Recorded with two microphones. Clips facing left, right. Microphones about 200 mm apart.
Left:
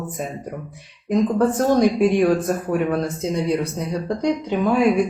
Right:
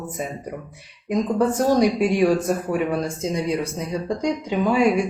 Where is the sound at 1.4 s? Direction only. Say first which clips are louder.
Right 1 dB; 5° right (ahead or behind).